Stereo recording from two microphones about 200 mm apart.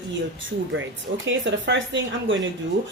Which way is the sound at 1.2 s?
65° right (ahead or behind).